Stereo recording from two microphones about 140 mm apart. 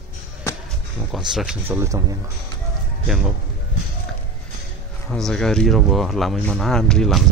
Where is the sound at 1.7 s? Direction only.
20° right (ahead or behind).